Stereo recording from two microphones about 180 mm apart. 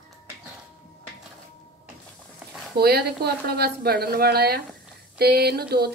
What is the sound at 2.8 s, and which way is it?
Speech, 60° right (ahead or behind).